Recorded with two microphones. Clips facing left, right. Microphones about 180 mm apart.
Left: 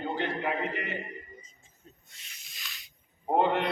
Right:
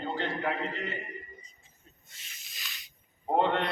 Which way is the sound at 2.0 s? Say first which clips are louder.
Right 1 dB; centre (ahead or behind).